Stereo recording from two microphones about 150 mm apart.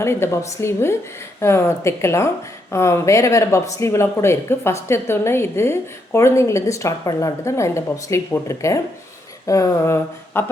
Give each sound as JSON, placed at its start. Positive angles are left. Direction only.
{"t": 0.0, "sound": "a woman's voice", "side_deg": 15}